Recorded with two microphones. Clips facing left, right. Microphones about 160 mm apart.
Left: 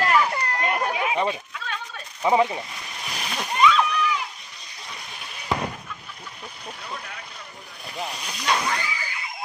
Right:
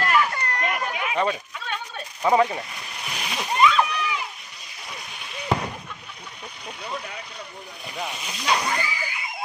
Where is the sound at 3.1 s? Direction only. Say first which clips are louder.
Right 2 dB; centre (ahead or behind).